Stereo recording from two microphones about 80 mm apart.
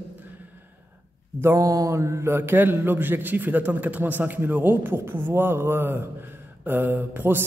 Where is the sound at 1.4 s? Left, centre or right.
Right.